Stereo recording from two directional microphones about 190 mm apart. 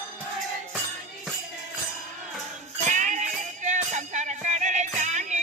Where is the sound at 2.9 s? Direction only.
40° right (ahead or behind).